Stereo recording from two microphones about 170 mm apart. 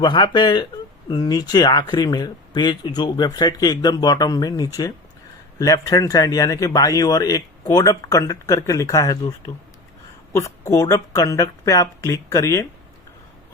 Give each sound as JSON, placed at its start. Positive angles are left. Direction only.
{"t": 0.0, "sound": "speech", "side_deg": 25}
{"t": 10.3, "sound": "speech", "side_deg": 20}